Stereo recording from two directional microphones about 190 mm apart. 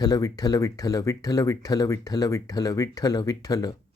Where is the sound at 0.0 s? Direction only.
20° left (ahead or behind).